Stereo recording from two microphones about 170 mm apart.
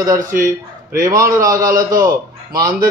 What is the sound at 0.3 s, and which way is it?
Speech, 60° right (ahead or behind).